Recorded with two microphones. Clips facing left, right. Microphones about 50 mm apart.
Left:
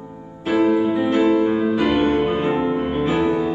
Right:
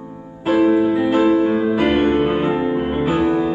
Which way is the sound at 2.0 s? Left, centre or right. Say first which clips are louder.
Right 2 dB; right.